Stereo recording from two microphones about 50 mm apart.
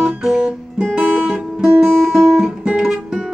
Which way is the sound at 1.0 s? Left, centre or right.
Right.